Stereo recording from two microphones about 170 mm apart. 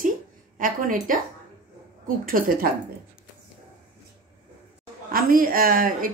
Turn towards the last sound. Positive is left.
turn(degrees=-55)  # may be behind; listen again after turning